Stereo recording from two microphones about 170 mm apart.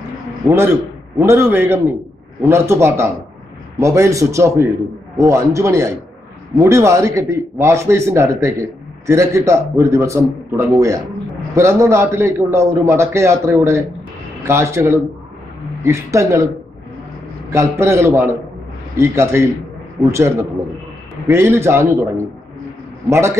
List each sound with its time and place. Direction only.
0.5 s a man's voice: 15° right (ahead or behind)
17.5 s a man's voice: 15° right (ahead or behind)
23.0 s a man's voice: 15° right (ahead or behind)